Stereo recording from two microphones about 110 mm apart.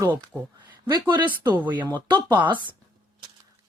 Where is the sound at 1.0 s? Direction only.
45° right (ahead or behind).